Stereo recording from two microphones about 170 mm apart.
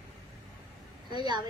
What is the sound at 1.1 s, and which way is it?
Speech, 25° right (ahead or behind).